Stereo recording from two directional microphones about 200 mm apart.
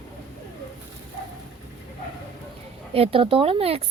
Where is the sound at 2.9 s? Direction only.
30° right (ahead or behind).